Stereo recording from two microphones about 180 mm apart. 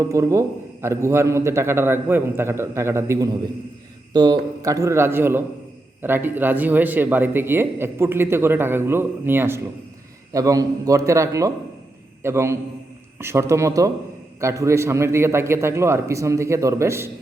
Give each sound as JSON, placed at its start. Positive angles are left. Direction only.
{"t": 0.0, "sound": "speech", "side_deg": -15}